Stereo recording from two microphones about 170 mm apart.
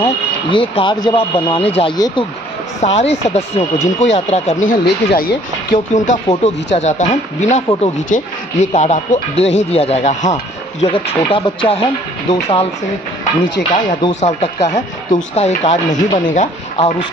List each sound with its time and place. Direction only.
0.0 s speech: 30° left (ahead or behind)
2.8 s speech: 40° left (ahead or behind)
6.4 s speech: 40° left (ahead or behind)
13.6 s speech: 65° left (ahead or behind)
14.2 s speech: 45° left (ahead or behind)